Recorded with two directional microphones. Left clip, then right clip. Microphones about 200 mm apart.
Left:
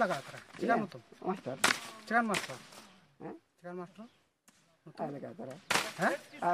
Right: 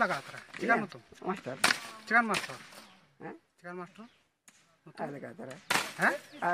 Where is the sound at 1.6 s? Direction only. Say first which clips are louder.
Right 2 dB; 45° right (ahead or behind).